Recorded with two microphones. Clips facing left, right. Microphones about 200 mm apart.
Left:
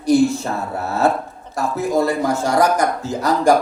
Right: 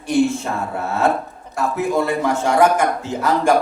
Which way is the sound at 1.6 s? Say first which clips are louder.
Left 1 dB; 40° left (ahead or behind).